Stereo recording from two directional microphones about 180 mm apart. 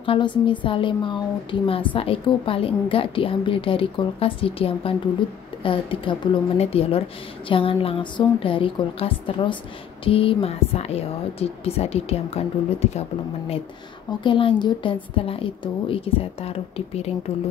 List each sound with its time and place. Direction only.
0.0 s a woman's voice: 30° left (ahead or behind)
14.2 s speech: 25° left (ahead or behind)